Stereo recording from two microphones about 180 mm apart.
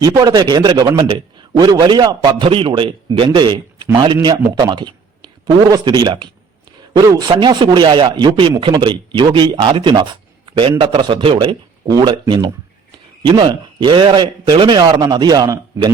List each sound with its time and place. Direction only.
0.0 s a man's voice: 20° right (ahead or behind)